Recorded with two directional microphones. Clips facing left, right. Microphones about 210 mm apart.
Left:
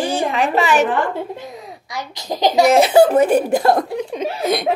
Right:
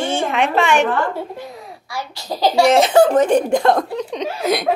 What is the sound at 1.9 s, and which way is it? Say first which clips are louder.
A child's voice: left 1 dB; 20° left (ahead or behind).